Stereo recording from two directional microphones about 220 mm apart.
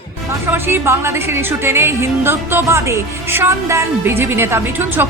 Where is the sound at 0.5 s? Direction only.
10° right (ahead or behind).